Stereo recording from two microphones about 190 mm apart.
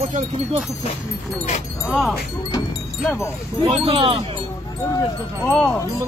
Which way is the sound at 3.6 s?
30° right (ahead or behind).